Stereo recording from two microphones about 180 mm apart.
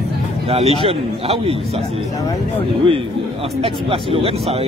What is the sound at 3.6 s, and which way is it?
Speech, 30° right (ahead or behind).